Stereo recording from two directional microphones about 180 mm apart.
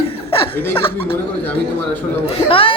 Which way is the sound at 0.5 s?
10° left (ahead or behind).